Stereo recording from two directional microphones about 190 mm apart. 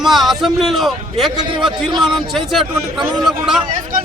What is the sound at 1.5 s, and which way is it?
Speech, 25° right (ahead or behind).